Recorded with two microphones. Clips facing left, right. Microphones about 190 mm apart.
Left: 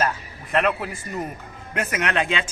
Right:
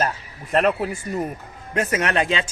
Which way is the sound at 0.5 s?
40° right (ahead or behind).